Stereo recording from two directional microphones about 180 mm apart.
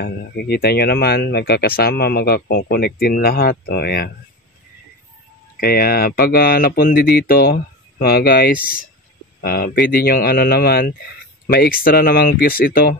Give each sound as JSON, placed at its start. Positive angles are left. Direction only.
{"t": 0.0, "sound": "speech", "side_deg": 60}
{"t": 5.6, "sound": "speech", "side_deg": 60}